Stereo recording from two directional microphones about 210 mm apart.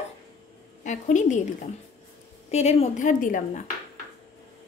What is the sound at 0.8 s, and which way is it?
Speech, 35° left (ahead or behind).